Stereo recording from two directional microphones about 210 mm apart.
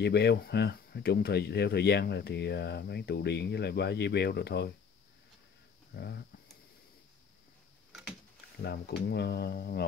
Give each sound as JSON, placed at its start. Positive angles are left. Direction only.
{"t": 0.0, "sound": "speech", "side_deg": 50}
{"t": 5.9, "sound": "speech", "side_deg": 50}
{"t": 8.6, "sound": "speech", "side_deg": 50}